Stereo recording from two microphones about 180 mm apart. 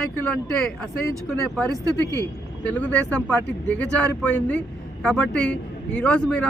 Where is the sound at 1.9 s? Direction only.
20° right (ahead or behind).